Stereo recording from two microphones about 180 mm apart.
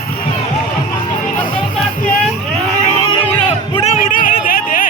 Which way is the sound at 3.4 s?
30° left (ahead or behind).